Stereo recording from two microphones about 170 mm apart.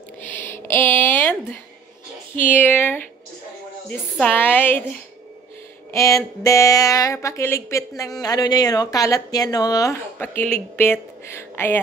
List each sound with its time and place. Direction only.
0.2 s a sound: 10° left (ahead or behind)
2.4 s speech: 10° left (ahead or behind)
10.1 s speech: 10° left (ahead or behind)